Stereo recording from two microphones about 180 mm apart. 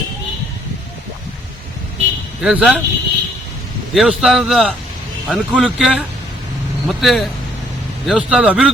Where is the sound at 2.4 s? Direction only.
5° right (ahead or behind).